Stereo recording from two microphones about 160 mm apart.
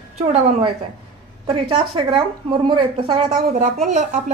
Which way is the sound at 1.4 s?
35° right (ahead or behind).